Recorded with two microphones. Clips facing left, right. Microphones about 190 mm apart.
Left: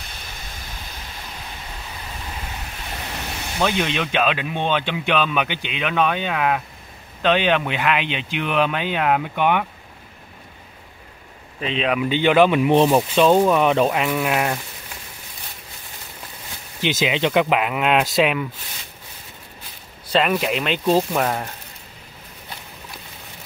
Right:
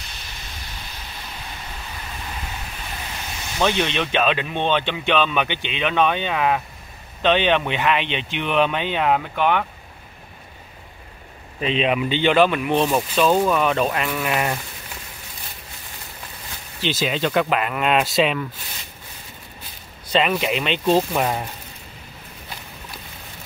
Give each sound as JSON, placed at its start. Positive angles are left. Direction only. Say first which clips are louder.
{"t": 3.6, "sound": "speech", "louder": "right 1 dB", "side_deg": 5}
{"t": 11.6, "sound": "speech", "louder": "right 1 dB", "side_deg": 0}
{"t": 12.6, "sound": "speech", "louder": "left 4 dB", "side_deg": 25}
{"t": 16.8, "sound": "speech", "louder": "left 2 dB", "side_deg": 15}
{"t": 20.1, "sound": "speech", "louder": "left 1 dB", "side_deg": 0}
{"t": 21.2, "sound": "speech", "louder": "even", "side_deg": -5}